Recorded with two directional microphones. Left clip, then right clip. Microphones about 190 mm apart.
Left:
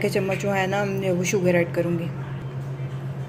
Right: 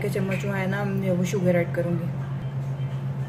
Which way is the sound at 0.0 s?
35° left (ahead or behind).